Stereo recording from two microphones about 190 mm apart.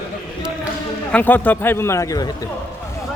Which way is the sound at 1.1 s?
10° left (ahead or behind).